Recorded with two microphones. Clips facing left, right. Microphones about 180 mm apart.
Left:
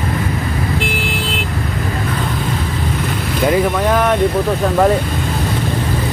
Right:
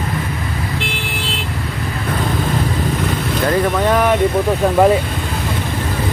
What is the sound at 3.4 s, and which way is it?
Speech, 10° left (ahead or behind).